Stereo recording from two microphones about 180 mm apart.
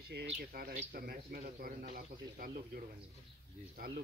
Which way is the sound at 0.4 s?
55° right (ahead or behind).